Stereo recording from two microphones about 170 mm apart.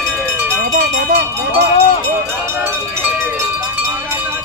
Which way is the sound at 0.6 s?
65° right (ahead or behind).